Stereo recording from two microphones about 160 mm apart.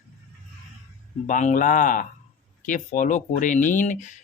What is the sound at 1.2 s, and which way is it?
Speech, 55° left (ahead or behind).